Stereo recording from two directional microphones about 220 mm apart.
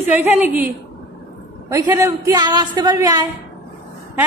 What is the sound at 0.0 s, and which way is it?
A woman's voice, 10° right (ahead or behind).